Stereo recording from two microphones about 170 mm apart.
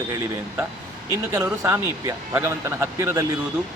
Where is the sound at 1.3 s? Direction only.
15° right (ahead or behind).